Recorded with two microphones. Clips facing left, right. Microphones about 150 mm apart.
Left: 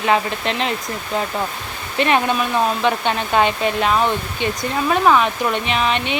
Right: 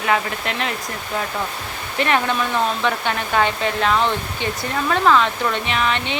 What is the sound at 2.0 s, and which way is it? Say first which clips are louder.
Speech: left 2 dB; 20° left (ahead or behind).